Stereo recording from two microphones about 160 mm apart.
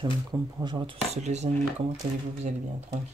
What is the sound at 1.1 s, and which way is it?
Speech, 45° right (ahead or behind).